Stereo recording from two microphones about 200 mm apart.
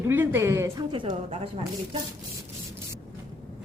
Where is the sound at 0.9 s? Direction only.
30° right (ahead or behind).